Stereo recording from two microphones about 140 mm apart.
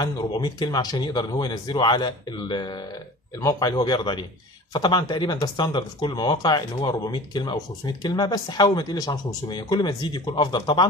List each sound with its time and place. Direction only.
0.0 s a man's voice: 30° left (ahead or behind)